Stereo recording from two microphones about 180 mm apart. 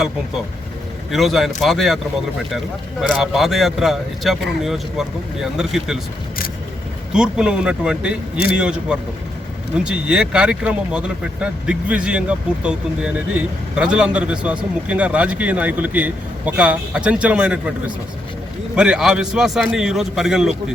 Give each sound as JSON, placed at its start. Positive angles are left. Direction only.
{"t": 1.1, "sound": "speech", "side_deg": 0}
{"t": 3.0, "sound": "speech", "side_deg": 0}
{"t": 7.1, "sound": "speech", "side_deg": -5}